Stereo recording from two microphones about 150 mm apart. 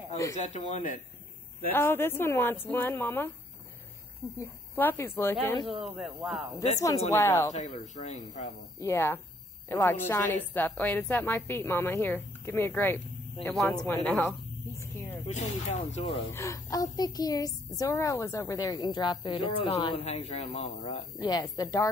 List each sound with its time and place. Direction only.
0.4 s speech: 55° left (ahead or behind)
1.7 s a woman's voice: 15° left (ahead or behind)
4.4 s a woman's voice: 15° left (ahead or behind)
5.6 s speech: 35° right (ahead or behind)
5.9 s speech: 10° right (ahead or behind)
7.1 s a woman's voice: 20° left (ahead or behind)
7.8 s speech: 55° left (ahead or behind)
8.8 s a woman's voice: 15° left (ahead or behind)
15.2 s speech: 50° left (ahead or behind)
16.3 s a woman's voice: 20° left (ahead or behind); by 21.3 s 40° left (ahead or behind)
21.3 s a woman's voice: 25° left (ahead or behind)